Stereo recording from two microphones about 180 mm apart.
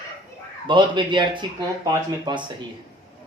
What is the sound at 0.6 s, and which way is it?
Speech, 25° right (ahead or behind).